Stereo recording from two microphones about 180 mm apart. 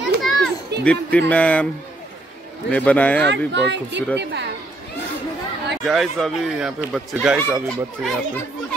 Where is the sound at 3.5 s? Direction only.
75° right (ahead or behind).